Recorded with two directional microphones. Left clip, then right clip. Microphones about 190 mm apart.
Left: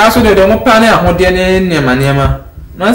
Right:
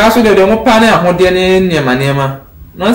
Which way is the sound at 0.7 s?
5° left (ahead or behind).